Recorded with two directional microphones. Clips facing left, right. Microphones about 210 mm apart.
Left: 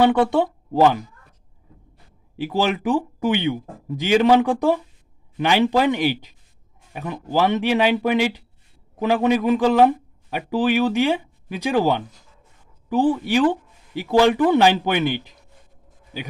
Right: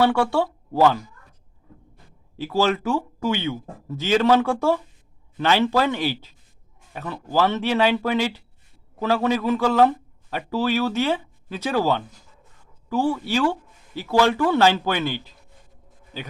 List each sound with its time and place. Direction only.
0.0 s speech: 20° left (ahead or behind)
2.3 s speech: 15° left (ahead or behind)